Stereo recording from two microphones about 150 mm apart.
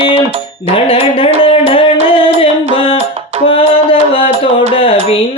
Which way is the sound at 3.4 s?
35° left (ahead or behind).